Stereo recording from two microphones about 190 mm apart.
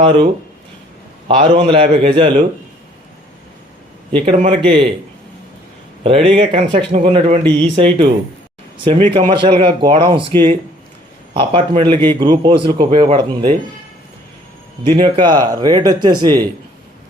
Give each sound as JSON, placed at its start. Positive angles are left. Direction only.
{"t": 0.0, "sound": "a man's voice", "side_deg": -30}
{"t": 1.3, "sound": "a man's voice", "side_deg": -25}
{"t": 4.3, "sound": "a man's voice", "side_deg": -30}
{"t": 6.0, "sound": "a man's voice", "side_deg": -30}
{"t": 14.8, "sound": "a man's voice", "side_deg": -25}